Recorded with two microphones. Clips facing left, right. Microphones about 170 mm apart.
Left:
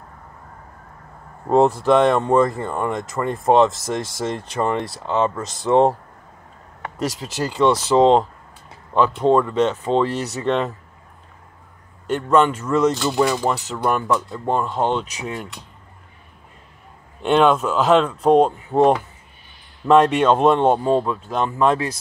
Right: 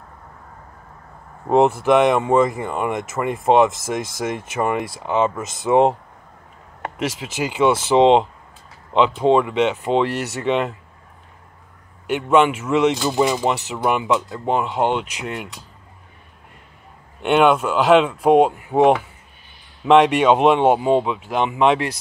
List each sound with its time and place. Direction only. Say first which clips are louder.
1.9 s speech: even; 15° right (ahead or behind)
5.3 s speech: even; centre (ahead or behind)
5.7 s speech: even; 15° right (ahead or behind)
7.1 s speech: even; 5° right (ahead or behind)
8.9 s speech: right 1 dB; 20° right (ahead or behind)
9.3 s speech: even; 5° right (ahead or behind)
12.1 s speech: right 1 dB; 5° right (ahead or behind)
17.2 s speech: even; 10° right (ahead or behind)